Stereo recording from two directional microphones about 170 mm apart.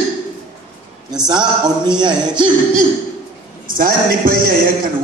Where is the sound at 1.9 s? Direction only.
25° right (ahead or behind).